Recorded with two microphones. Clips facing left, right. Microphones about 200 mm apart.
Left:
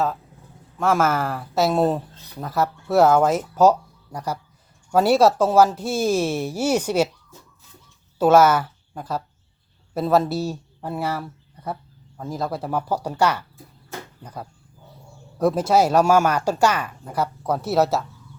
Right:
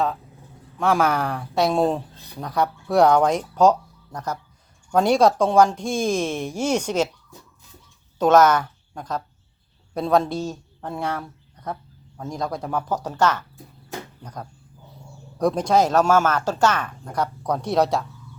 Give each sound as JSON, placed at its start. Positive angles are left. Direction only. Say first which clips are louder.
{"t": 0.8, "sound": "speech", "louder": "even", "side_deg": 0}
{"t": 8.2, "sound": "a woman's voice", "louder": "left 1 dB", "side_deg": 10}